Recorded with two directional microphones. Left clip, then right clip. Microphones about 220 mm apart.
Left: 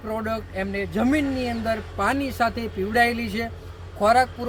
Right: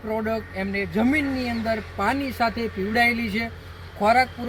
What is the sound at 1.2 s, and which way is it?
Speech, 30° left (ahead or behind).